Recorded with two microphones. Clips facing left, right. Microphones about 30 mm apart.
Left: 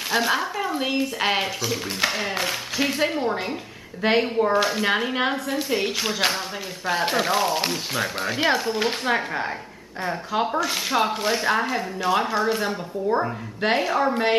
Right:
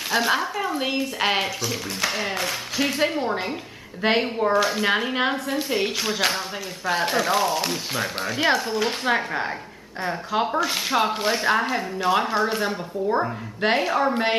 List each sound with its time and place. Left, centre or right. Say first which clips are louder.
0.1 s speech: right 1 dB; centre
2.9 s speech: even; centre
8.8 s speech: even; centre